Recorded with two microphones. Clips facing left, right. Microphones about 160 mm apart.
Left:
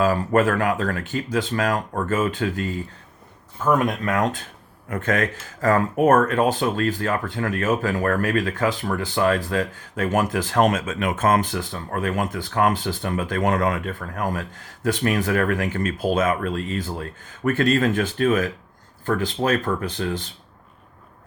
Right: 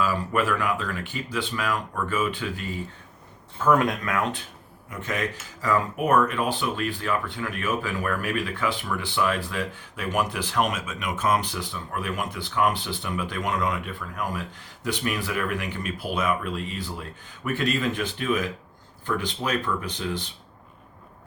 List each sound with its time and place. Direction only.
0.0 s speech: 45° left (ahead or behind)
3.6 s speech: 10° left (ahead or behind)
4.0 s speech: 35° left (ahead or behind)
4.9 s speech: 55° left (ahead or behind)